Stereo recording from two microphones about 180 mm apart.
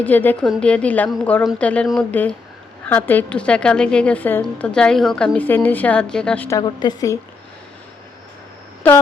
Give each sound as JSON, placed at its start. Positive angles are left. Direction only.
{"t": 0.0, "sound": "a woman's voice", "side_deg": 10}
{"t": 6.6, "sound": "a woman's voice", "side_deg": 20}